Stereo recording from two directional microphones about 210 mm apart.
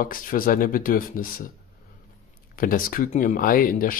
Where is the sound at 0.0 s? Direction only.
40° left (ahead or behind).